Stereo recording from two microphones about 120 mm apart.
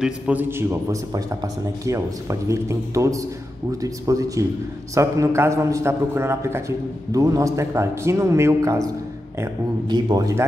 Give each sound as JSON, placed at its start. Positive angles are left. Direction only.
{"t": 0.0, "sound": "a man's voice", "side_deg": -15}
{"t": 9.8, "sound": "a man's voice", "side_deg": -35}